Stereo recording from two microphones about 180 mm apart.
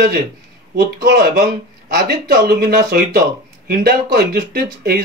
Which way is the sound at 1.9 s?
60° right (ahead or behind).